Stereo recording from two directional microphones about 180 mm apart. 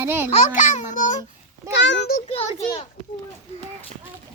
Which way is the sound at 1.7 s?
75° left (ahead or behind).